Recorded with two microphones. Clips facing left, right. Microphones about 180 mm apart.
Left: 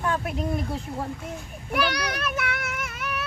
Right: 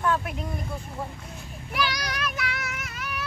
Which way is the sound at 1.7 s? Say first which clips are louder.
Left 4 dB; 60° left (ahead or behind).